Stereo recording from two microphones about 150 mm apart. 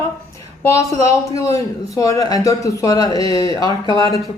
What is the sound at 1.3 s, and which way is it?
Speech, 20° left (ahead or behind).